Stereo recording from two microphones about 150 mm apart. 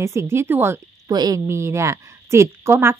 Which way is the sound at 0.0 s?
20° right (ahead or behind).